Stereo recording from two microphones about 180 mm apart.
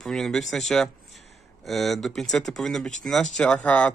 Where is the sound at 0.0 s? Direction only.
5° left (ahead or behind).